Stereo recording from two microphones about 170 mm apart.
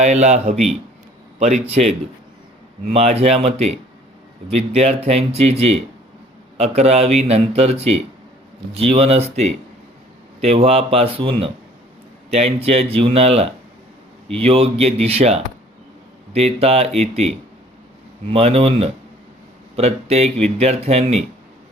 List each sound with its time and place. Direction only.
0.0 s a man's voice: 40° right (ahead or behind)
18.3 s speech: 35° right (ahead or behind)